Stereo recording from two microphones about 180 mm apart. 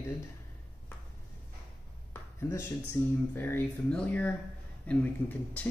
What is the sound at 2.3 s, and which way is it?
Speech, 15° left (ahead or behind).